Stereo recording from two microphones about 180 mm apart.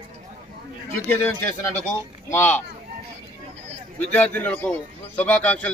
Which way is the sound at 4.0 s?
5° left (ahead or behind).